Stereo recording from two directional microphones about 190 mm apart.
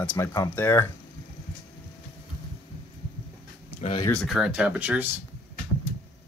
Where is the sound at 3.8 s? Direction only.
25° left (ahead or behind).